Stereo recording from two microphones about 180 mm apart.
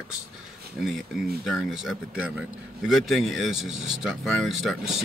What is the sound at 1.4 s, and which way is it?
Speech, centre (ahead or behind).